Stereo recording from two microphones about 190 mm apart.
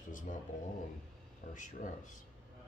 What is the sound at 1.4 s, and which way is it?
Speech, 40° left (ahead or behind).